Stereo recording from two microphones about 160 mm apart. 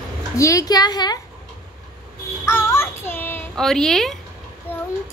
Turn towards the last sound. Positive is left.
turn(degrees=10)  # may be behind; listen again after turning